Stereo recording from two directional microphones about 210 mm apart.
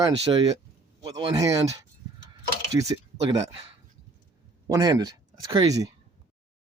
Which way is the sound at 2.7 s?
15° right (ahead or behind).